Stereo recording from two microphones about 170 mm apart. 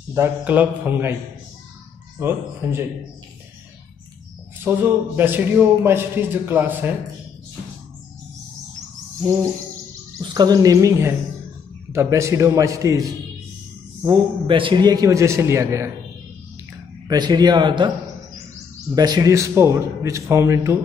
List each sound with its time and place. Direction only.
0.1 s a man's voice: 10° right (ahead or behind)
2.1 s a man's voice: 15° right (ahead or behind)
4.6 s a man's voice: 10° right (ahead or behind)
9.2 s a man's voice: 20° right (ahead or behind)
14.0 s a man's voice: 30° right (ahead or behind)
17.1 s speech: 25° right (ahead or behind)
18.9 s a man's voice: 20° right (ahead or behind)